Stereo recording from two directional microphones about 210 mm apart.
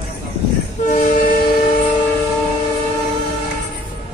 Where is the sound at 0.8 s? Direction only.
35° left (ahead or behind).